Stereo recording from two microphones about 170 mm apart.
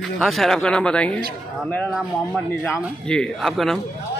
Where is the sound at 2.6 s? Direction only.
5° left (ahead or behind).